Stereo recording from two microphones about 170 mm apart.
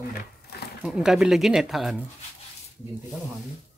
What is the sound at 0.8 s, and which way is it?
Speech, 5° right (ahead or behind).